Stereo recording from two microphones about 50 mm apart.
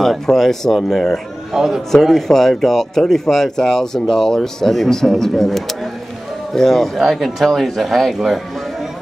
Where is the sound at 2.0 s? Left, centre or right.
Centre.